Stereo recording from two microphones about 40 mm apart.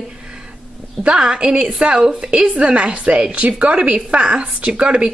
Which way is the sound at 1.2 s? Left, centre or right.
Right.